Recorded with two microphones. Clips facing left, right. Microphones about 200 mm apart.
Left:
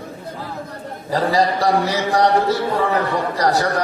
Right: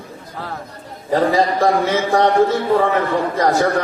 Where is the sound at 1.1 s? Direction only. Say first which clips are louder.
Right 2 dB; 35° left (ahead or behind).